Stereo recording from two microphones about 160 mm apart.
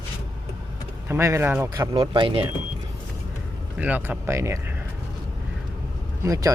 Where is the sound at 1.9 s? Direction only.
30° right (ahead or behind).